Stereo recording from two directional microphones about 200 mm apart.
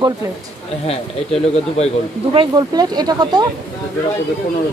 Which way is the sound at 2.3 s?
25° right (ahead or behind).